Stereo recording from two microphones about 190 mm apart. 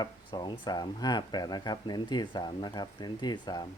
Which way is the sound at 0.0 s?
25° left (ahead or behind).